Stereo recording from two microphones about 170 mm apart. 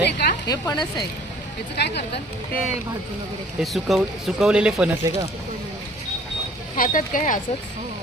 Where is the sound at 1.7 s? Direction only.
80° left.